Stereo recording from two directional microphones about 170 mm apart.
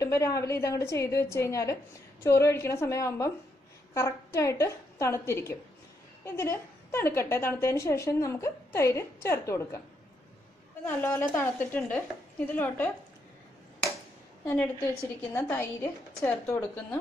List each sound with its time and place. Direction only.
0.0 s a woman's voice: 15° left (ahead or behind)
10.8 s a woman's voice: 10° left (ahead or behind)
14.4 s a woman's voice: 15° left (ahead or behind)